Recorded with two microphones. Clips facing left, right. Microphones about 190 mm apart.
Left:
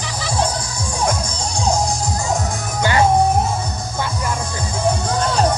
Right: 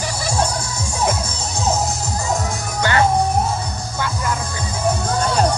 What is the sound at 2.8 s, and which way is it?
Music, 15° left (ahead or behind).